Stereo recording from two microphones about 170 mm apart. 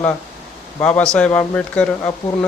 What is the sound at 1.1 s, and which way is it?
A man's voice, 10° left (ahead or behind).